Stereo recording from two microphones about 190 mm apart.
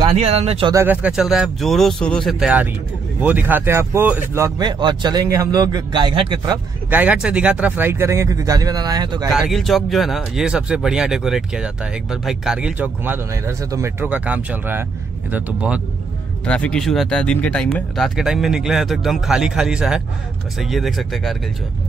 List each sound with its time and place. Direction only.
0.0 s speech: 35° right (ahead or behind)
0.7 s speech: 10° right (ahead or behind)
6.9 s speech: 10° right (ahead or behind)
9.3 s speech: centre (ahead or behind)
16.4 s speech: 5° left (ahead or behind)